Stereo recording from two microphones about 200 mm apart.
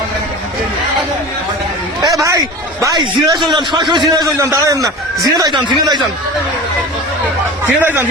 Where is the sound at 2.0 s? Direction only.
15° right (ahead or behind).